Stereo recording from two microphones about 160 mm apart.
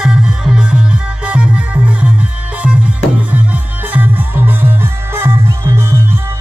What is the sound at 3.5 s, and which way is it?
Music, 10° right (ahead or behind).